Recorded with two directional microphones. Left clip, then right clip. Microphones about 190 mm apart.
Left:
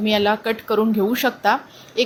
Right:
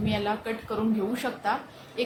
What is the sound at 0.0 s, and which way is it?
Speech, 35° left (ahead or behind).